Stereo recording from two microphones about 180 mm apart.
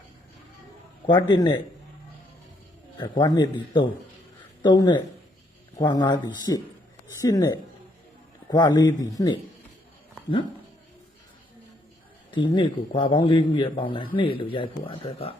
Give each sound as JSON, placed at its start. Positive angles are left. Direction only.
{"t": 1.0, "sound": "speech", "side_deg": 25}
{"t": 3.0, "sound": "speech", "side_deg": 25}
{"t": 4.6, "sound": "speech", "side_deg": 25}
{"t": 12.3, "sound": "speech", "side_deg": 25}